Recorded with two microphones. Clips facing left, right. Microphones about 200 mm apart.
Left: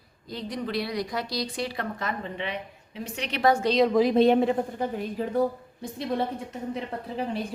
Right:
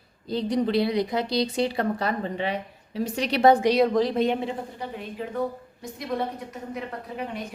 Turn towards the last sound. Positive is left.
turn(degrees=30)  # may be behind; listen again after turning